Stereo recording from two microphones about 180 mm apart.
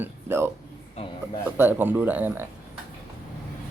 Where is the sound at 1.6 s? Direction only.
10° right (ahead or behind).